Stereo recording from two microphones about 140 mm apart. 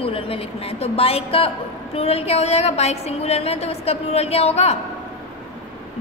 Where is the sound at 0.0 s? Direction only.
45° left (ahead or behind).